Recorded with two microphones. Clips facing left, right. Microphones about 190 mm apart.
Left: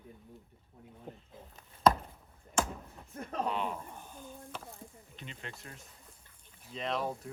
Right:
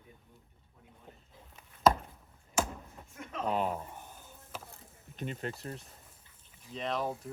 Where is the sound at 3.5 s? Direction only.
40° right (ahead or behind).